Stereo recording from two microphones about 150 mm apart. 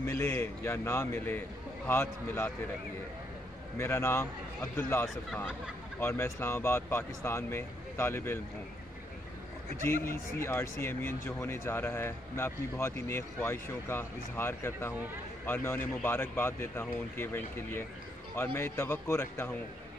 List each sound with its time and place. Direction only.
0.0 s speech: 15° left (ahead or behind)
3.7 s speech: 15° left (ahead or behind)
10.3 s speech: 15° left (ahead or behind)